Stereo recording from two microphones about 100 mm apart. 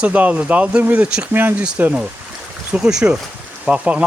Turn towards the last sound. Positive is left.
turn(degrees=-10)  # may be behind; listen again after turning